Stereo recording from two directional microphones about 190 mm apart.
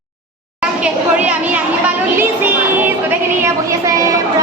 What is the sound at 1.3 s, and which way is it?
A woman's voice, 5° right (ahead or behind).